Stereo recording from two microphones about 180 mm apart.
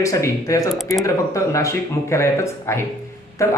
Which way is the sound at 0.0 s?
15° left (ahead or behind).